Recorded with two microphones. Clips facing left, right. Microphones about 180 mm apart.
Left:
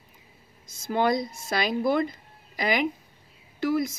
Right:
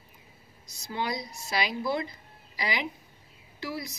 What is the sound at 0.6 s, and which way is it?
Speech, 50° left (ahead or behind).